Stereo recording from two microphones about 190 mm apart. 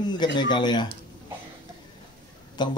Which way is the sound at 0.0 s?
20° left (ahead or behind).